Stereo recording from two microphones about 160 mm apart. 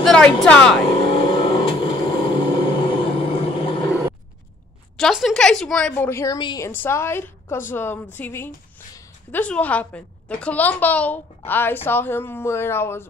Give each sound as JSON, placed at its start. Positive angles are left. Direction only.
{"t": 0.0, "sound": "speech", "side_deg": 5}
{"t": 1.1, "sound": "a sound", "side_deg": 30}
{"t": 4.9, "sound": "a woman's voice", "side_deg": 0}
{"t": 6.7, "sound": "a woman's voice", "side_deg": 15}